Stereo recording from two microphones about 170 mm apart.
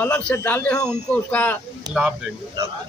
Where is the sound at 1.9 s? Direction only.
25° right (ahead or behind).